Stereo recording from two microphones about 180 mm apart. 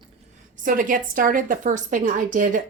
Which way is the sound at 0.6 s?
50° right (ahead or behind).